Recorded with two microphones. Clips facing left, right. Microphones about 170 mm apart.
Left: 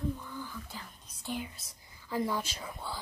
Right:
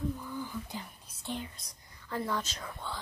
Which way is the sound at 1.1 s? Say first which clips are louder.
Left 1 dB; 5° left (ahead or behind).